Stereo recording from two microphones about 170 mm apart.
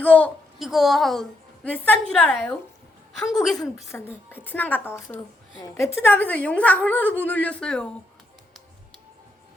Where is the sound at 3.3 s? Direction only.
Centre (ahead or behind).